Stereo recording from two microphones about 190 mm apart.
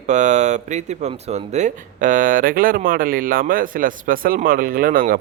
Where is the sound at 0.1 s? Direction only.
40° right (ahead or behind).